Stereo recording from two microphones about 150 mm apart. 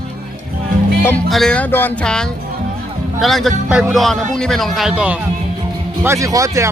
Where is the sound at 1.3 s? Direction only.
5° left (ahead or behind).